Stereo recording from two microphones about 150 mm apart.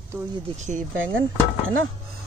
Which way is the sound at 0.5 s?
55° right (ahead or behind).